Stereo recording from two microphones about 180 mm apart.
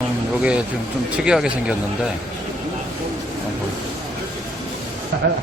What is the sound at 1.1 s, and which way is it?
Speech, 5° right (ahead or behind).